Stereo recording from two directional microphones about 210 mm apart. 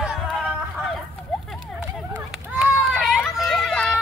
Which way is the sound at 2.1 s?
5° right (ahead or behind).